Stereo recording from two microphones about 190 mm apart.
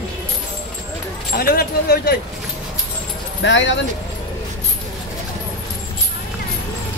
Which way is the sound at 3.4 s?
70° left (ahead or behind).